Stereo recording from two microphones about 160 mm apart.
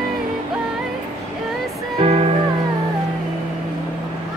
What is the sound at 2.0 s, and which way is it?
Music, 40° right (ahead or behind).